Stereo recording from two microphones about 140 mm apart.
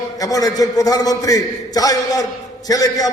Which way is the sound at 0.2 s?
25° left (ahead or behind).